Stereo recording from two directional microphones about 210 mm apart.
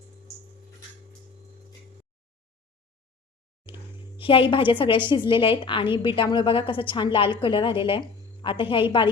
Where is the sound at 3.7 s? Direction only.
25° left (ahead or behind).